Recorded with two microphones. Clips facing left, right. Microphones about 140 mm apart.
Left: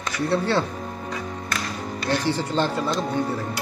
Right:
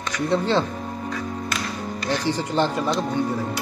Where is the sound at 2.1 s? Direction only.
15° right (ahead or behind).